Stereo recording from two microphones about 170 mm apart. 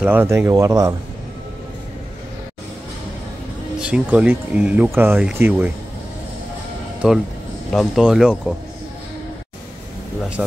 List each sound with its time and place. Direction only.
0.0 s speech: 10° right (ahead or behind)
3.8 s speech: 5° right (ahead or behind)
7.0 s speech: 5° right (ahead or behind)